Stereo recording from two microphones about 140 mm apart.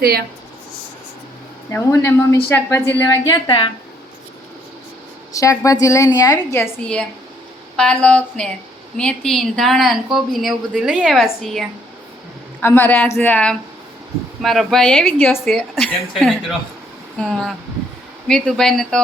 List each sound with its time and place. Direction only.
1.7 s a woman's voice: 20° left (ahead or behind)
3.4 s speech: 35° left (ahead or behind)
5.3 s a woman's voice: 25° left (ahead or behind)
6.8 s a woman's voice: 5° left (ahead or behind)
12.5 s a woman's voice: 15° left (ahead or behind)
15.4 s a woman's voice: centre (ahead or behind)